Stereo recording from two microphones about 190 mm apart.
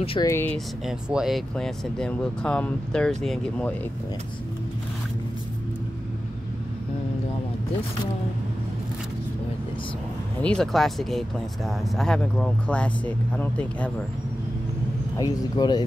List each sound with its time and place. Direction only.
0.0 s speech: 30° left (ahead or behind)
0.3 s speech: 10° left (ahead or behind)
0.8 s speech: 5° right (ahead or behind)
10.4 s speech: 5° left (ahead or behind)
15.1 s speech: 20° left (ahead or behind)